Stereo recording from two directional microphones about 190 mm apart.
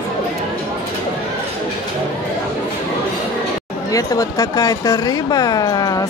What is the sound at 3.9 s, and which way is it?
Speech, 15° left (ahead or behind).